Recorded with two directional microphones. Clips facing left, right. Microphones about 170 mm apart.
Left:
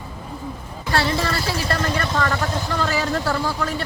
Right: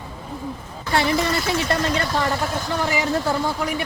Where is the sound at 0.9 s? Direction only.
20° right (ahead or behind).